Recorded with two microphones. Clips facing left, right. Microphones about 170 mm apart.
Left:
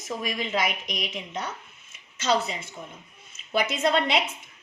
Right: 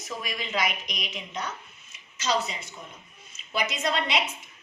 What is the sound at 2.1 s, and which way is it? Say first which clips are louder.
A woman's voice: left 3 dB; 55° left (ahead or behind).